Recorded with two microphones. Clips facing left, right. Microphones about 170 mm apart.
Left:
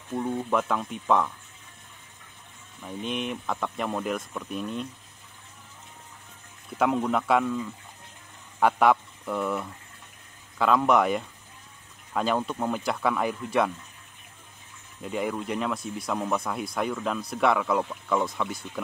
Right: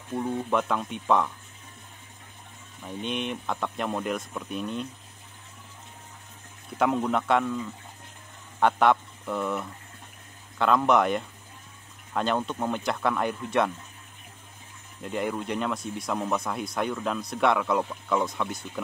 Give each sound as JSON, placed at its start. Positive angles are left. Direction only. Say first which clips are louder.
{"t": 0.1, "sound": "speech", "louder": "even", "side_deg": 0}
{"t": 2.8, "sound": "speech", "louder": "even", "side_deg": 0}
{"t": 6.8, "sound": "speech", "louder": "even", "side_deg": 0}
{"t": 15.0, "sound": "speech", "louder": "even", "side_deg": 0}